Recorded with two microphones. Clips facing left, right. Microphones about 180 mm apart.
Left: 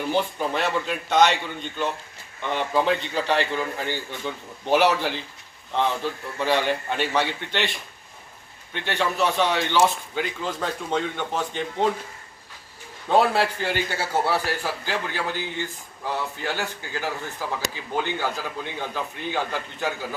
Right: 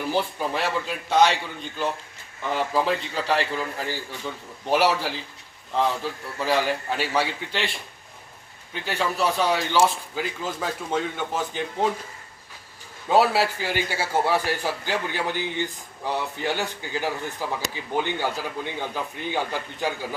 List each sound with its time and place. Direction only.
0.1 s a man's voice: 5° right (ahead or behind)
2.4 s a man's voice: 5° right (ahead or behind)
8.7 s a man's voice: 5° right (ahead or behind)
13.1 s a man's voice: 5° right (ahead or behind)